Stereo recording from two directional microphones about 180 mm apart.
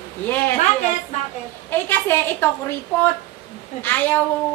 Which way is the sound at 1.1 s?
40° left (ahead or behind).